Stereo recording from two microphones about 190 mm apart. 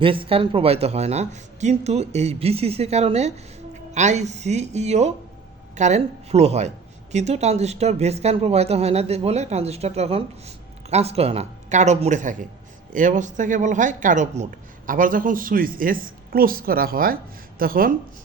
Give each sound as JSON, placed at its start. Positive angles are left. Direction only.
{"t": 0.0, "sound": "a man's voice", "side_deg": -25}